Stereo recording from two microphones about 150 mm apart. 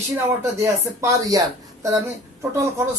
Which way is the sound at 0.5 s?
20° right (ahead or behind).